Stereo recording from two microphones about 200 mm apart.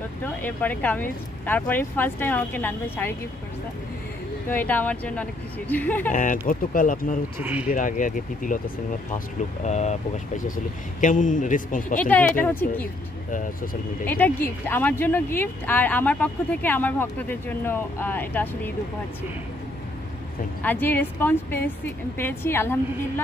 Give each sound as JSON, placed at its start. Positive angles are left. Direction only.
{"t": 0.2, "sound": "speech", "side_deg": 10}
{"t": 4.5, "sound": "speech", "side_deg": 10}
{"t": 6.0, "sound": "speech", "side_deg": 40}
{"t": 12.0, "sound": "speech", "side_deg": 10}
{"t": 13.3, "sound": "speech", "side_deg": 40}
{"t": 14.0, "sound": "speech", "side_deg": 10}
{"t": 20.6, "sound": "speech", "side_deg": 10}